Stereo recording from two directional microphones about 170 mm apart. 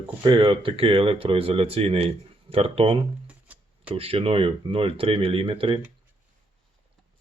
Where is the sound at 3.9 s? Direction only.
35° right (ahead or behind).